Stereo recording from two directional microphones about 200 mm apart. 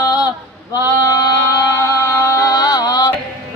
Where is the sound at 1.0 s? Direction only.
15° left (ahead or behind).